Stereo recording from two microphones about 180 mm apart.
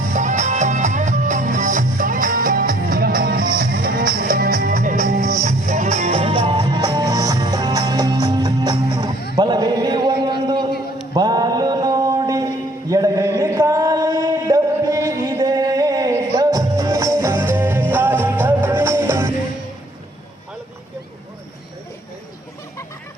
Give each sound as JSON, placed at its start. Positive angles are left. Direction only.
{"t": 0.1, "sound": "music", "side_deg": -40}
{"t": 9.3, "sound": "chant", "side_deg": -25}
{"t": 11.1, "sound": "mantra", "side_deg": -20}
{"t": 12.9, "sound": "chant", "side_deg": -20}